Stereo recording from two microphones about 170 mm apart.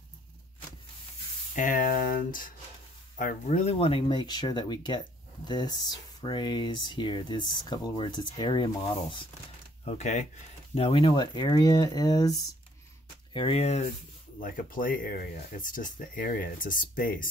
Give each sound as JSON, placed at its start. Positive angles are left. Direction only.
{"t": 1.5, "sound": "speech", "side_deg": 50}
{"t": 9.8, "sound": "speech", "side_deg": 45}
{"t": 13.3, "sound": "speech", "side_deg": 30}
{"t": 14.4, "sound": "speech", "side_deg": 55}